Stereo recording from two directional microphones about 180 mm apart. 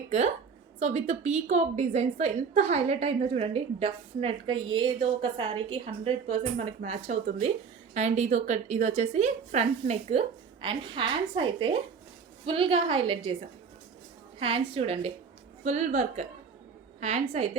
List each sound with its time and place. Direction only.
0.8 s a woman's voice: 40° right (ahead or behind)
14.3 s a woman's voice: 30° right (ahead or behind)